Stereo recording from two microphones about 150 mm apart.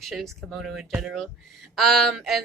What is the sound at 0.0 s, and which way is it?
A woman's voice, centre (ahead or behind).